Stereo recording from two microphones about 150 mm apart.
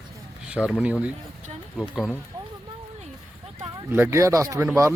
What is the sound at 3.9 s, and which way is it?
Speech, 15° right (ahead or behind).